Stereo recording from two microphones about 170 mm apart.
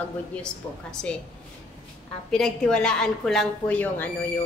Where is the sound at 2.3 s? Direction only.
5° left (ahead or behind).